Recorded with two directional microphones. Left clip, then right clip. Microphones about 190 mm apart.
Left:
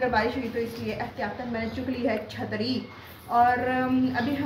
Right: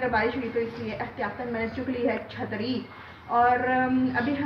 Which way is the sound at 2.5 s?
15° left (ahead or behind).